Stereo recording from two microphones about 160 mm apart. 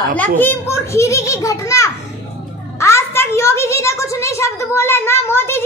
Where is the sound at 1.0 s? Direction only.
20° left (ahead or behind).